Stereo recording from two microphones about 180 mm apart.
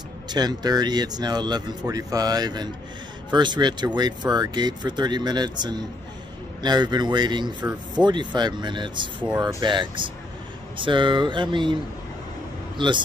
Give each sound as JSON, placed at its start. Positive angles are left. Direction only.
{"t": 0.3, "sound": "a man's voice", "side_deg": -20}